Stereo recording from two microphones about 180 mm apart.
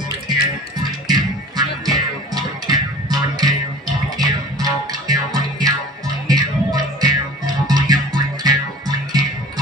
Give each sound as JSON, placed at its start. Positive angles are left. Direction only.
{"t": 0.3, "sound": "music", "side_deg": -25}